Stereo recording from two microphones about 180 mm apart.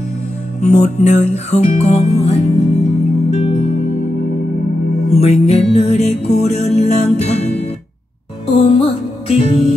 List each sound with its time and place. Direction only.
0.6 s music: 40° left (ahead or behind)
5.1 s music: 35° left (ahead or behind)
8.6 s music: 35° left (ahead or behind)